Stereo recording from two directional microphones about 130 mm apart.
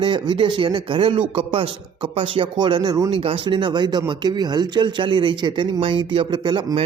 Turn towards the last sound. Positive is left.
turn(degrees=-35)  # may be behind; listen again after turning